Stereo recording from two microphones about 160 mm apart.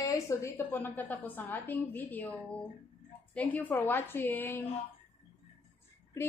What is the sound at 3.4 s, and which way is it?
A woman's voice, 10° left (ahead or behind).